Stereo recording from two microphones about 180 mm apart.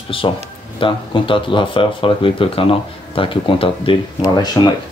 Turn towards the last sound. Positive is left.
turn(degrees=20)  # may be behind; listen again after turning